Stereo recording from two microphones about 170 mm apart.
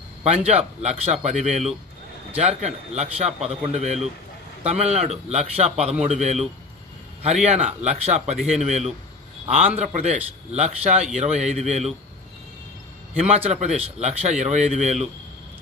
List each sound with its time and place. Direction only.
0.5 s speech: 40° right (ahead or behind)
13.2 s speech: 40° right (ahead or behind)